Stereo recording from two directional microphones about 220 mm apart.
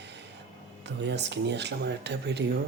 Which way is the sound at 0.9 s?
50° right (ahead or behind).